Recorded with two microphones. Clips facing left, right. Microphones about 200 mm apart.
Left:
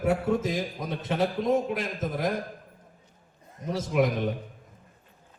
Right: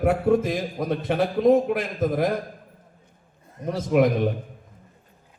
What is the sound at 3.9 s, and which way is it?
Speech, 60° right (ahead or behind).